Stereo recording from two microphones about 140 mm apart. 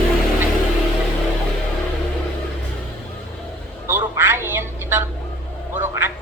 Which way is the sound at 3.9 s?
15° right (ahead or behind).